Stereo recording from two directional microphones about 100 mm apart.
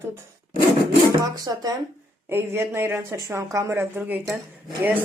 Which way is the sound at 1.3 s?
40° right (ahead or behind).